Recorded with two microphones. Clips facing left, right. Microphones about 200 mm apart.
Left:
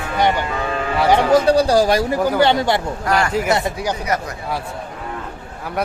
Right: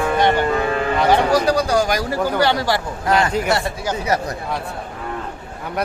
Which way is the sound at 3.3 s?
Centre (ahead or behind).